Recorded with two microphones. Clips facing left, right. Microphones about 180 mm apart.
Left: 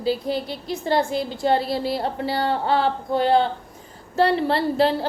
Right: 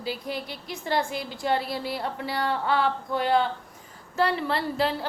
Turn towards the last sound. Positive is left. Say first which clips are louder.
# left 7 dB
turn(degrees=30)  # may be behind; listen again after turning